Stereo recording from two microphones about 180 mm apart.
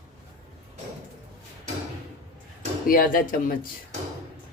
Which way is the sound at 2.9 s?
50° left (ahead or behind).